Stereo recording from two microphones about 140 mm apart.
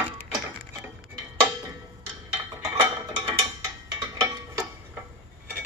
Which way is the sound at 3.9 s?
25° right (ahead or behind).